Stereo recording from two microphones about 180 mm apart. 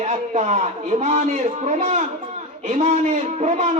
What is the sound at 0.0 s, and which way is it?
A man's voice, 40° right (ahead or behind).